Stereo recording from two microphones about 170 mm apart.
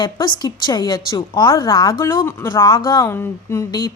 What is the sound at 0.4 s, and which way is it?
A woman's voice, 25° left (ahead or behind).